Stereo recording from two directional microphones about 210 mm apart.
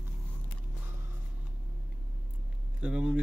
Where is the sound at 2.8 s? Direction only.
5° right (ahead or behind).